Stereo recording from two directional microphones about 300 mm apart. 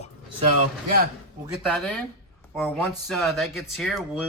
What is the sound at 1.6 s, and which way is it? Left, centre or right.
A man's voice, centre.